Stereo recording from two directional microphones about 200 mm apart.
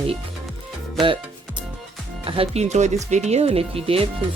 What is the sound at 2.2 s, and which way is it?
Speech, 30° right (ahead or behind).